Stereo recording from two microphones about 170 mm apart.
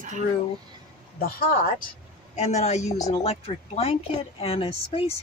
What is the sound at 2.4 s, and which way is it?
Speech, 40° left (ahead or behind).